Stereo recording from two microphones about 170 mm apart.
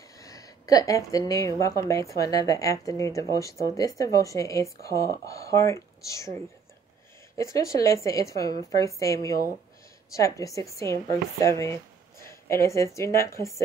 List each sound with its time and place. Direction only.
0.2 s a woman's voice: 20° left (ahead or behind)